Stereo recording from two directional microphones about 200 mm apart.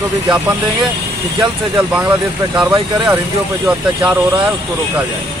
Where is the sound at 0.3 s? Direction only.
Centre (ahead or behind).